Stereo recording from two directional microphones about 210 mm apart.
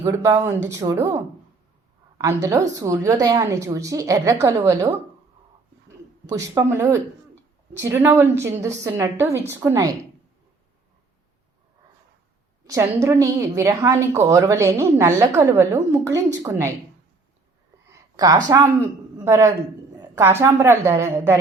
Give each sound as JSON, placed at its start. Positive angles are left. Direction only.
{"t": 0.0, "sound": "a woman's voice", "side_deg": -15}
{"t": 6.2, "sound": "a woman's voice", "side_deg": -15}
{"t": 12.6, "sound": "a woman's voice", "side_deg": -15}
{"t": 17.8, "sound": "a sound", "side_deg": -15}
{"t": 19.2, "sound": "a woman's voice", "side_deg": -15}